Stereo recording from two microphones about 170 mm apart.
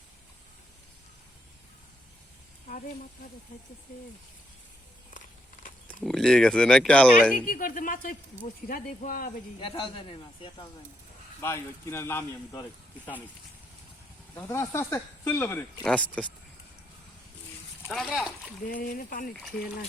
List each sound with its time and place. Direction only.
6.0 s speech: centre (ahead or behind)
7.4 s speech: 55° left (ahead or behind)
9.6 s a man's voice: 30° left (ahead or behind)
11.3 s speech: 15° left (ahead or behind)
14.3 s speech: 15° left (ahead or behind)
17.9 s speech: 5° right (ahead or behind)
18.7 s speech: 55° left (ahead or behind)